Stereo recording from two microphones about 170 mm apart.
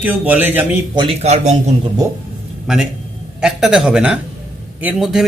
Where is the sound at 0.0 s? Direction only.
10° right (ahead or behind).